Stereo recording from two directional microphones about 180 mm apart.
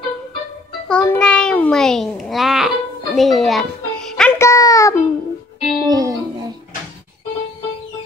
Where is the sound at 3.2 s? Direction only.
Centre (ahead or behind).